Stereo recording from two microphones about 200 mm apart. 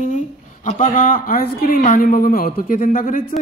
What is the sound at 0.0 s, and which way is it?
A woman's voice, 40° left (ahead or behind).